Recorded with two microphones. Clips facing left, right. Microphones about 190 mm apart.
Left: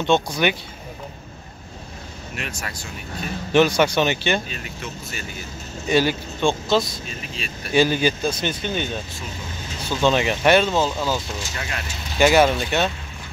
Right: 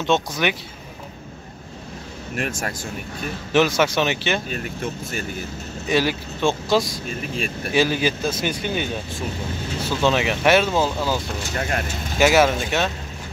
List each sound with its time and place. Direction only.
0.0 s speech: centre (ahead or behind)
2.3 s speech: 50° right (ahead or behind)
3.5 s speech: 5° right (ahead or behind)
4.5 s speech: 50° right (ahead or behind)
5.9 s speech: centre (ahead or behind)
7.1 s speech: 50° right (ahead or behind)
7.7 s a man's voice: centre (ahead or behind)
9.8 s speech: 5° right (ahead or behind)
11.2 s speech: 60° right (ahead or behind)
12.2 s speech: 5° right (ahead or behind)